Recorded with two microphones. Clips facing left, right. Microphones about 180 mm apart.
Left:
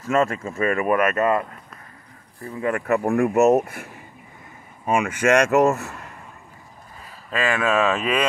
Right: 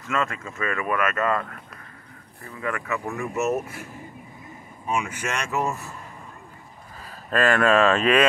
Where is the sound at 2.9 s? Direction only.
55° left (ahead or behind).